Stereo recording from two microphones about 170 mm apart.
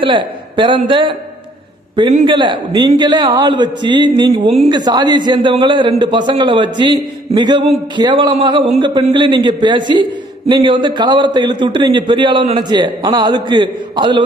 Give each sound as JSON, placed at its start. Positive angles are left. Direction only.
{"t": 0.0, "sound": "a man's voice", "side_deg": -30}
{"t": 2.2, "sound": "a man's voice", "side_deg": -25}
{"t": 4.5, "sound": "a woman's voice", "side_deg": -35}
{"t": 4.7, "sound": "a man's voice", "side_deg": -25}